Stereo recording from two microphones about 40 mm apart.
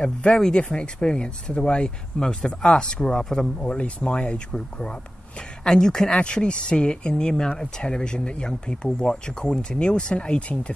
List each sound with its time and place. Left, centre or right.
0.0 s speech: left
3.6 s speech: left